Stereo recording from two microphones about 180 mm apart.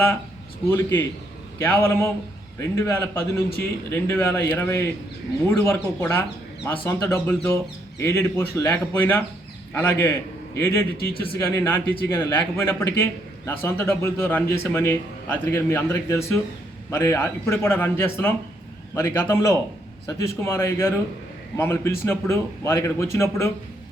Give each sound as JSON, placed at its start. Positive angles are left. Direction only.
{"t": 0.7, "sound": "a man's voice", "side_deg": 15}